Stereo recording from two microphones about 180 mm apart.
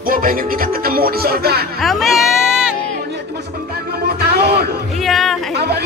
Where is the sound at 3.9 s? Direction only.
60° right (ahead or behind).